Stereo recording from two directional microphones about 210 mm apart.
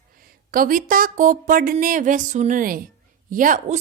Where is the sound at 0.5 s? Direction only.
40° right (ahead or behind).